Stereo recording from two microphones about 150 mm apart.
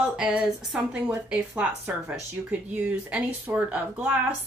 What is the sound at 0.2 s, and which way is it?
A woman's voice, 5° right (ahead or behind).